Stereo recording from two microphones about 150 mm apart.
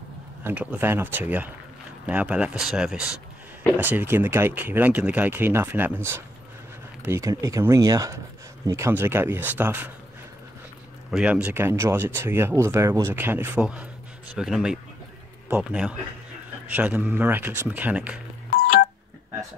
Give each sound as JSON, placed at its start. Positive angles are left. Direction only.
{"t": 0.4, "sound": "speech", "side_deg": -10}
{"t": 11.1, "sound": "speech", "side_deg": -5}
{"t": 18.6, "sound": "telephone dialing", "side_deg": 85}